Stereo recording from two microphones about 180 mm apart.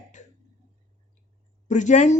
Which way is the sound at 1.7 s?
45° left (ahead or behind).